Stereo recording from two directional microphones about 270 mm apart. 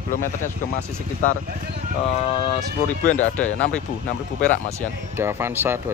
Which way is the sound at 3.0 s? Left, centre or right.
Centre.